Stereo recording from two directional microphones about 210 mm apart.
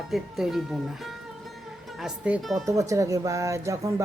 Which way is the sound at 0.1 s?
Centre (ahead or behind).